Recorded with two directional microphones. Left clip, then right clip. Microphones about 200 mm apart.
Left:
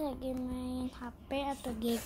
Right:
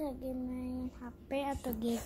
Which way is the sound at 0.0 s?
25° left (ahead or behind).